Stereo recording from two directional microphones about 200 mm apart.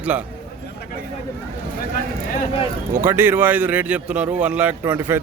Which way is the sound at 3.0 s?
10° right (ahead or behind).